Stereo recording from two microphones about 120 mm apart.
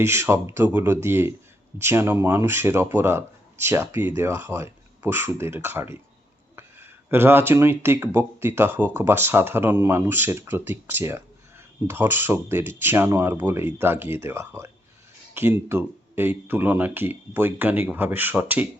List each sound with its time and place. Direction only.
0.0 s speech: 20° right (ahead or behind)